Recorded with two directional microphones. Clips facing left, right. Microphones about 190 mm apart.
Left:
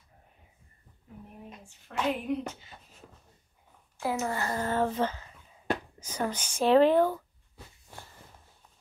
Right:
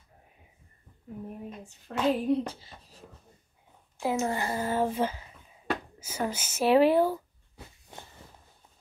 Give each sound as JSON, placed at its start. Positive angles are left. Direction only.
{"t": 1.9, "sound": "speech", "side_deg": -35}
{"t": 4.0, "sound": "a woman's voice", "side_deg": -20}
{"t": 4.5, "sound": "speech", "side_deg": -10}